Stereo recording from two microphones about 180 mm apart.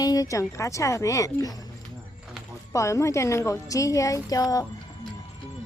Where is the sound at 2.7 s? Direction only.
15° left (ahead or behind).